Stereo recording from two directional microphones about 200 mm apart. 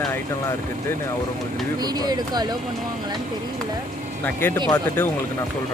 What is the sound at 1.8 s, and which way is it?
Speech, 20° right (ahead or behind).